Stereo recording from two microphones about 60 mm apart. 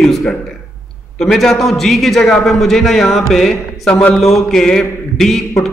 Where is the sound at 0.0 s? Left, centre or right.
Centre.